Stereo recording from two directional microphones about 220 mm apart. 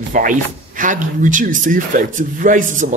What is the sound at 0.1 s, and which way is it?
Speech, 35° right (ahead or behind).